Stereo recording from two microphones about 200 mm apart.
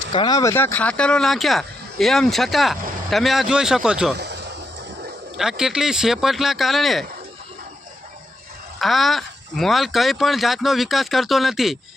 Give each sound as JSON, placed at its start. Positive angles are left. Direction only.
{"t": 0.1, "sound": "speech", "side_deg": 20}
{"t": 4.1, "sound": "speech", "side_deg": -55}
{"t": 5.4, "sound": "speech", "side_deg": 0}
{"t": 8.8, "sound": "speech", "side_deg": 0}